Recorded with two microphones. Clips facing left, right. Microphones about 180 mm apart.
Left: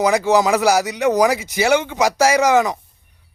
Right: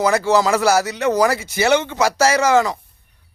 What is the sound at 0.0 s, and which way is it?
Speech, 15° left (ahead or behind).